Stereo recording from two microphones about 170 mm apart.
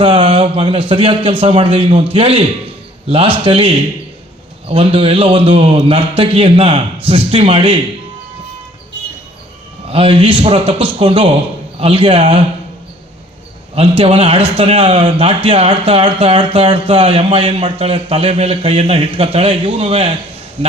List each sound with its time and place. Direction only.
0.0 s a man's voice: 30° right (ahead or behind)
9.9 s a man's voice: 35° right (ahead or behind)
13.7 s a man's voice: 35° right (ahead or behind)